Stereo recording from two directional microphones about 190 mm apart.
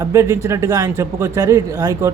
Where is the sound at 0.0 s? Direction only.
15° right (ahead or behind).